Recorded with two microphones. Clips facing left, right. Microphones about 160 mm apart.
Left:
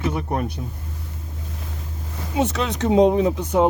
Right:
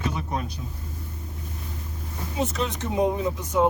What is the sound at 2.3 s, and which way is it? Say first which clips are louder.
Speech: left 5 dB; 80° left.